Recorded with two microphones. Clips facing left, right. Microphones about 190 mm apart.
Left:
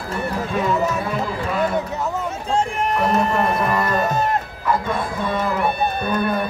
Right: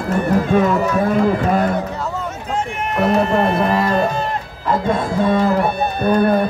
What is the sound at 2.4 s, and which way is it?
Run, 30° left (ahead or behind).